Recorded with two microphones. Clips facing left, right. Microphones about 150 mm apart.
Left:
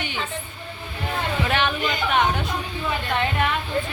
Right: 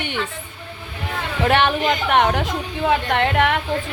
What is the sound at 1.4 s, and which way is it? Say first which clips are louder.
A woman's voice: right 8 dB; 65° right (ahead or behind).